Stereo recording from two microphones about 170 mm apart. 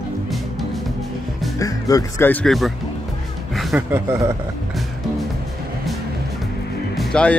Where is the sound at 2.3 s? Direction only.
Centre (ahead or behind).